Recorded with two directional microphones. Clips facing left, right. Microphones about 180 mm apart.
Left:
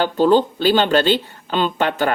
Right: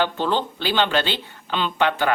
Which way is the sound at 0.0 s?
40° left (ahead or behind).